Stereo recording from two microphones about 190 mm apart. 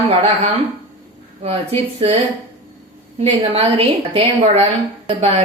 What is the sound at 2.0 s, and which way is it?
A woman's voice, 30° right (ahead or behind).